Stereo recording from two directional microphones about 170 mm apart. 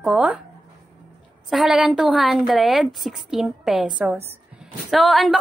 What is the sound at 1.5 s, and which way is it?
A woman's voice, 5° right (ahead or behind).